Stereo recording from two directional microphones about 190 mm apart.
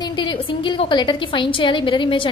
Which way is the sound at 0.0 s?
25° left (ahead or behind).